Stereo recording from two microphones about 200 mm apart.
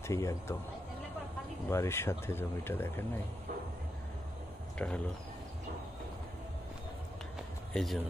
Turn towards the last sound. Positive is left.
turn(degrees=0)  # may be behind; listen again after turning